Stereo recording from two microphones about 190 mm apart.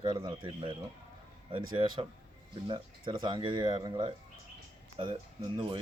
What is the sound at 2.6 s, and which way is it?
Speech, 25° right (ahead or behind).